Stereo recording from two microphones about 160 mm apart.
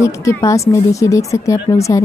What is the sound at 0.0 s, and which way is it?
Speech, 20° left (ahead or behind).